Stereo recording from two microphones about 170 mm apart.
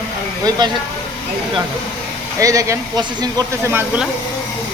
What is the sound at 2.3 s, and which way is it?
Speech, 20° right (ahead or behind).